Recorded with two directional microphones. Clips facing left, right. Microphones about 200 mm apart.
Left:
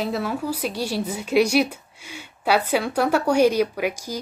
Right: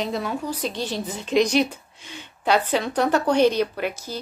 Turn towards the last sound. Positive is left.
turn(degrees=10)  # may be behind; listen again after turning